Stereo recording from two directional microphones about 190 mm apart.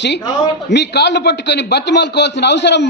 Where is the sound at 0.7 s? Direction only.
65° left (ahead or behind).